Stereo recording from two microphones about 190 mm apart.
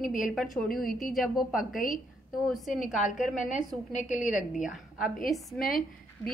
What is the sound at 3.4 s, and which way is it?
Speech, 40° left (ahead or behind).